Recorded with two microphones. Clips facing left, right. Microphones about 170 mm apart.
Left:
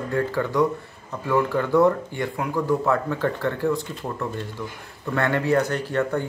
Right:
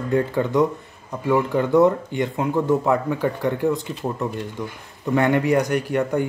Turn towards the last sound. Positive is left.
turn(degrees=-15)  # may be behind; listen again after turning